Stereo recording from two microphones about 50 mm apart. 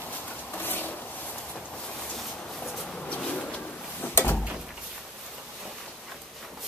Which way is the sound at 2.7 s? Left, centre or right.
Centre.